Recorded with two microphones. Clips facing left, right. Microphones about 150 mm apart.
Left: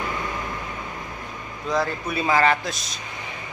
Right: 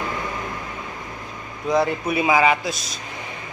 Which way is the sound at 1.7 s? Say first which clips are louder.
Right 4 dB; 15° right (ahead or behind).